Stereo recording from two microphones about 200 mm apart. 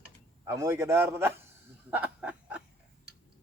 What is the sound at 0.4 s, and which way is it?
Speech, 15° right (ahead or behind).